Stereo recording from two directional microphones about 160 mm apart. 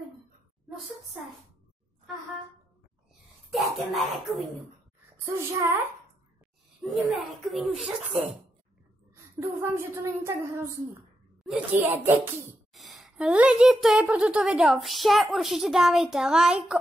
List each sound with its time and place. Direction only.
3.4 s speech: centre (ahead or behind)
5.2 s speech: 15° right (ahead or behind)
6.8 s a woman's voice: centre (ahead or behind)
9.1 s a woman's voice: 15° right (ahead or behind)
12.7 s a woman's voice: centre (ahead or behind)